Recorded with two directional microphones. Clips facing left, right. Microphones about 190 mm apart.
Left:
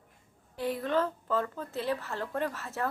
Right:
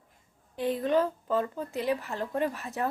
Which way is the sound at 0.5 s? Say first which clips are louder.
Right 3 dB; 20° right (ahead or behind).